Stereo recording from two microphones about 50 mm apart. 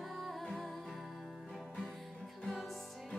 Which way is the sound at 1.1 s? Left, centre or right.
Centre.